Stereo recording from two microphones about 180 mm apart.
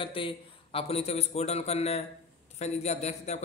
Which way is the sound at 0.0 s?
30° left (ahead or behind).